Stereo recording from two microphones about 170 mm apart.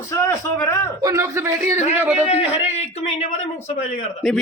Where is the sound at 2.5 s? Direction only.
40° left (ahead or behind).